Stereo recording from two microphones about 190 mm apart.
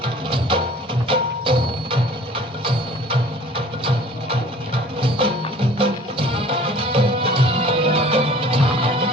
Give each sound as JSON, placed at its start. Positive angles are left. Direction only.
{"t": 0.0, "sound": "music", "side_deg": -25}